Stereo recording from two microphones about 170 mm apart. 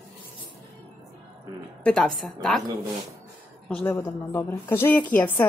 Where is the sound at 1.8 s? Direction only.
5° left (ahead or behind).